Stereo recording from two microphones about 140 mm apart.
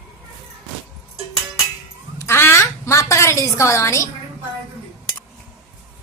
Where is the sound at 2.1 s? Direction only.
20° left (ahead or behind).